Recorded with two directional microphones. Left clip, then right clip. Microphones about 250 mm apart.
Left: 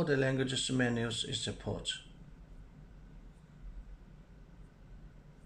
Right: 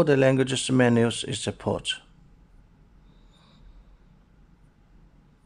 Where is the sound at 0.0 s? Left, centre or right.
Right.